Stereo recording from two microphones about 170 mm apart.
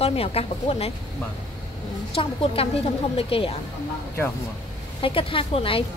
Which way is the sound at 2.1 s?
35° left (ahead or behind).